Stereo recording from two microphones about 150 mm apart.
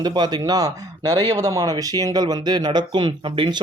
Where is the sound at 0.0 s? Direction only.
30° right (ahead or behind).